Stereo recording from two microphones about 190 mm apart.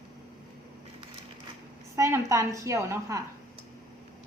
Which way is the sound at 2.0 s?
15° right (ahead or behind).